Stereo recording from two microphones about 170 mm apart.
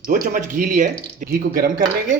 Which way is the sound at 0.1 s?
50° right (ahead or behind).